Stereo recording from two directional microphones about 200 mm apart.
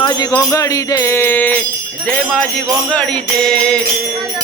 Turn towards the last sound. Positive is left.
turn(degrees=5)  # may be behind; listen again after turning